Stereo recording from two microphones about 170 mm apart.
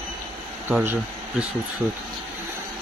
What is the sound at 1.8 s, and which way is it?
Speech, centre (ahead or behind).